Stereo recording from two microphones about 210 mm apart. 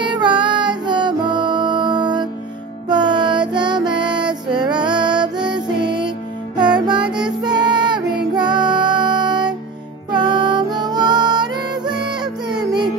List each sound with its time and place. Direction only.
0.0 s music: 20° right (ahead or behind)